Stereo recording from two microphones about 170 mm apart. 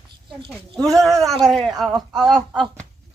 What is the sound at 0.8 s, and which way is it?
Speech, 20° right (ahead or behind).